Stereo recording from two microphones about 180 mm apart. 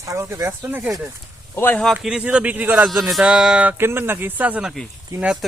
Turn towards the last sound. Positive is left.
turn(degrees=-10)  # may be behind; listen again after turning